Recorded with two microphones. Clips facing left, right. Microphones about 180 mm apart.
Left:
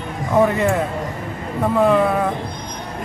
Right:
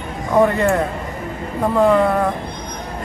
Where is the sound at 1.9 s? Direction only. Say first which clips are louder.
Right 2 dB; 5° left (ahead or behind).